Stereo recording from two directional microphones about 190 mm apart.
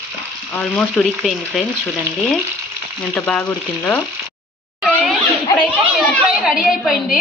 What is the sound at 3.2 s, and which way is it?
Speech, 5° left (ahead or behind).